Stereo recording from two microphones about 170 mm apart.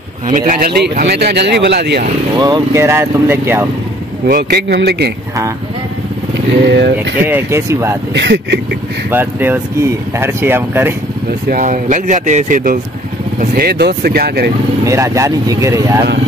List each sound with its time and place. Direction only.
0.3 s speech: 55° right (ahead or behind); by 2.0 s 80° right
2.3 s speech: 25° right (ahead or behind)
4.3 s speech: 75° right (ahead or behind)
6.7 s speech: 90° right
7.2 s speech: 10° right (ahead or behind)
8.1 s speech: 85° right
9.1 s speech: 10° right (ahead or behind)
11.4 s speech: 50° right (ahead or behind)
13.4 s speech: 65° right (ahead or behind)
14.9 s speech: 20° right (ahead or behind)